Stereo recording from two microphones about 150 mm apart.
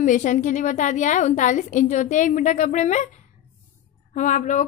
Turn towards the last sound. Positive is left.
turn(degrees=55)  # may be behind; listen again after turning